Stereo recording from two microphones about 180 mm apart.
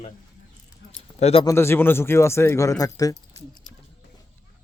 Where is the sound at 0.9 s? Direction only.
35° left (ahead or behind).